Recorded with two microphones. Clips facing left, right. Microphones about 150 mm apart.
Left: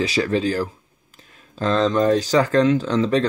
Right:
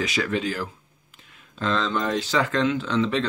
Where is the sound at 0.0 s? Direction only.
35° left (ahead or behind).